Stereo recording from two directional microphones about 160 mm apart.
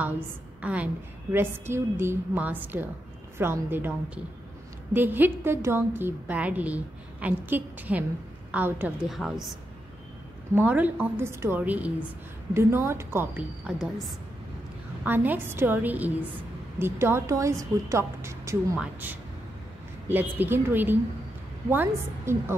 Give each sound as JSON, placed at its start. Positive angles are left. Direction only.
{"t": 0.6, "sound": "a woman's voice", "side_deg": -10}
{"t": 9.2, "sound": "a woman's voice", "side_deg": 5}
{"t": 10.5, "sound": "a woman's voice", "side_deg": -10}
{"t": 15.0, "sound": "a woman's voice", "side_deg": -10}